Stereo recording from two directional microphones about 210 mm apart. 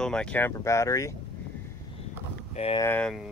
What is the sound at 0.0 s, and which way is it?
Speech, 5° left (ahead or behind).